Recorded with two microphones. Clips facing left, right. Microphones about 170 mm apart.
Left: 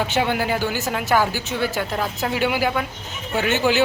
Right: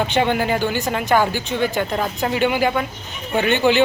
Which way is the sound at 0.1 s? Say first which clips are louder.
Right 3 dB; 5° left (ahead or behind).